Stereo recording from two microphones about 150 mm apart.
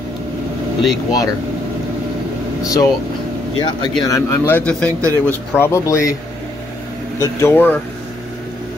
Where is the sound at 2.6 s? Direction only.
25° left (ahead or behind).